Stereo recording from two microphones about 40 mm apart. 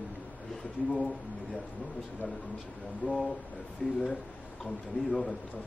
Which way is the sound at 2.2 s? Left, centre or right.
Right.